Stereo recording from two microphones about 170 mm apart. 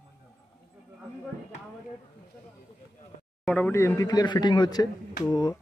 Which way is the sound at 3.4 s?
10° left (ahead or behind).